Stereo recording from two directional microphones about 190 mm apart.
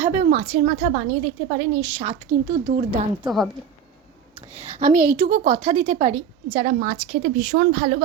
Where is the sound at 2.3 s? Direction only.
35° right (ahead or behind).